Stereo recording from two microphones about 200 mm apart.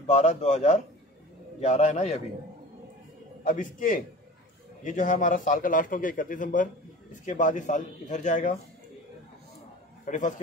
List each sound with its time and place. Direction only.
0.0 s a man's voice: 35° left (ahead or behind)
3.4 s a man's voice: 40° left (ahead or behind)
10.0 s a man's voice: 40° left (ahead or behind)